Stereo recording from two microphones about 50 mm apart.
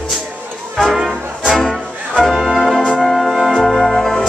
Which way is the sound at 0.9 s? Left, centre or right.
Centre.